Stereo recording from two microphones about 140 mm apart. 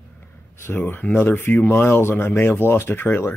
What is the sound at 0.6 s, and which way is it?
Speech, 15° left (ahead or behind).